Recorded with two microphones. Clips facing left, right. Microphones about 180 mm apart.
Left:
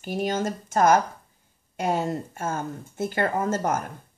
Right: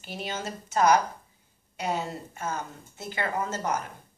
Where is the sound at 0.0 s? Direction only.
50° left (ahead or behind).